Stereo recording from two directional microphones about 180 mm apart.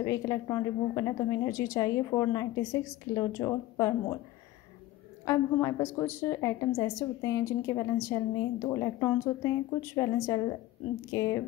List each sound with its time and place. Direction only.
0.0 s a woman's voice: 20° left (ahead or behind)
5.2 s a woman's voice: 15° left (ahead or behind)